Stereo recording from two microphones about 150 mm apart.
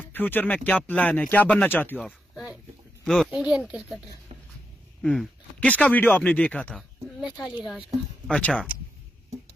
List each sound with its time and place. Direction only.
0.0 s speech: 10° left (ahead or behind)
2.0 s a sound: centre (ahead or behind)
3.3 s speech: 5° right (ahead or behind)
5.0 s speech: centre (ahead or behind)
7.2 s speech: 30° left (ahead or behind)
8.3 s speech: 10° left (ahead or behind)